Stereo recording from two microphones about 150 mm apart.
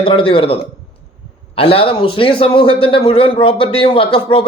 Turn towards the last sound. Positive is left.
turn(degrees=35)  # may be behind; listen again after turning